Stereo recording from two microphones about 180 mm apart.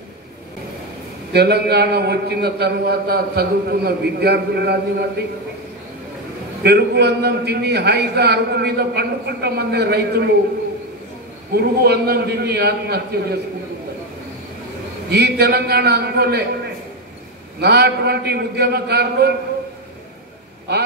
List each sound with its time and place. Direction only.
1.3 s a man's voice: 65° right (ahead or behind)
6.6 s a man's voice: 65° right (ahead or behind)
11.5 s a man's voice: 65° right (ahead or behind)
15.0 s a man's voice: 65° right (ahead or behind)
17.6 s a man's voice: 65° right (ahead or behind)